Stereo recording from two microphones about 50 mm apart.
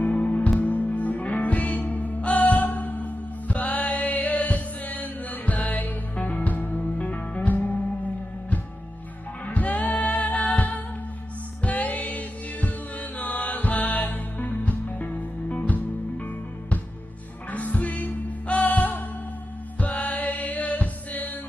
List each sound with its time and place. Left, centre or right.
0.0 s music: left
9.5 s music: left
17.5 s music: left